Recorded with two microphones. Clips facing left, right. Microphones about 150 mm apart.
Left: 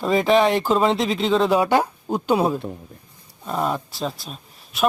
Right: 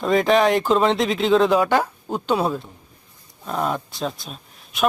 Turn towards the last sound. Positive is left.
turn(degrees=0)  # may be behind; listen again after turning